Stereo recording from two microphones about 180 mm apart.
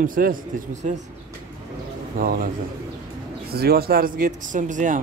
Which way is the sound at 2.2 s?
50° right (ahead or behind).